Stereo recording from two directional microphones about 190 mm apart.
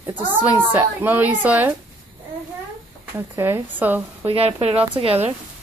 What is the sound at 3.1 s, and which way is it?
Speech, 10° right (ahead or behind).